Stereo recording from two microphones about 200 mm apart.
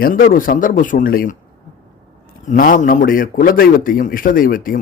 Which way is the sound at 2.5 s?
40° left (ahead or behind).